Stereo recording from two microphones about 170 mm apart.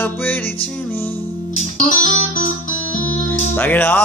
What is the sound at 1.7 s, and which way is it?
Music, 50° left (ahead or behind).